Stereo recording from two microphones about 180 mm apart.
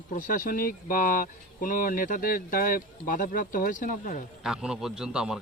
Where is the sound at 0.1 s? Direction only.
50° left (ahead or behind).